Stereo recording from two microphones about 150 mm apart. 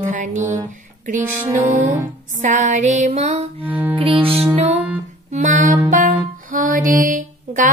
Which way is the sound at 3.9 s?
35° right (ahead or behind).